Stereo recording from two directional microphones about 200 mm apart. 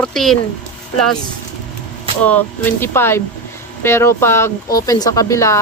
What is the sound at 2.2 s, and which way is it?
Speech, 10° left (ahead or behind).